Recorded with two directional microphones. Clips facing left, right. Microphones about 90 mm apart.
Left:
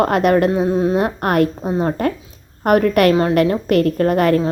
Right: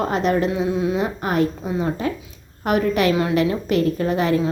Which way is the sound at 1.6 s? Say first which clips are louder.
Left 4 dB; 40° left (ahead or behind).